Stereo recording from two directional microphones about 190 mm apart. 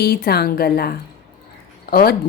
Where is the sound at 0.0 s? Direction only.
55° left (ahead or behind).